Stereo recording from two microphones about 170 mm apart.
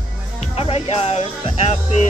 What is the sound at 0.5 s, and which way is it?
Music, 35° left (ahead or behind).